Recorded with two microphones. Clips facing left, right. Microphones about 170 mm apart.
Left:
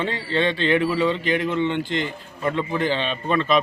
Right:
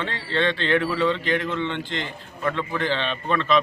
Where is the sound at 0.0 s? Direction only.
10° left (ahead or behind).